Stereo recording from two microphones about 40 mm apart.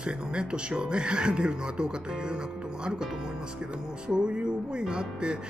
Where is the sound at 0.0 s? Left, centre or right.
Right.